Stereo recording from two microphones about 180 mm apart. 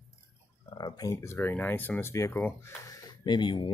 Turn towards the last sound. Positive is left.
turn(degrees=25)  # may be behind; listen again after turning